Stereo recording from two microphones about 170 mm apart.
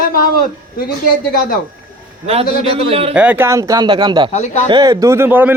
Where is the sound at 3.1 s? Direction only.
10° right (ahead or behind); by 4.3 s 25° right (ahead or behind).